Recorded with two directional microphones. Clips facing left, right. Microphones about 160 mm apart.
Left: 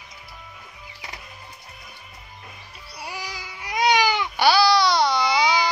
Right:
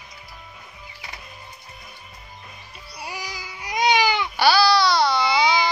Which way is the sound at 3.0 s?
Centre (ahead or behind).